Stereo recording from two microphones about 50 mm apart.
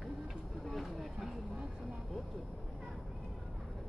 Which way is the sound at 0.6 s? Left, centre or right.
Centre.